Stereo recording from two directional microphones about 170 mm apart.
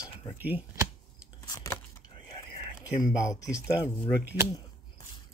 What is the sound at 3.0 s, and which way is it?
Speech, 20° left (ahead or behind).